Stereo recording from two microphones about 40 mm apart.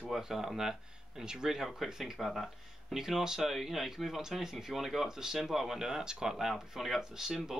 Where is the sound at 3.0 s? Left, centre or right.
Centre.